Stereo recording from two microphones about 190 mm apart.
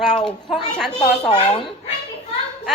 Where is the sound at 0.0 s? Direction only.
5° left (ahead or behind).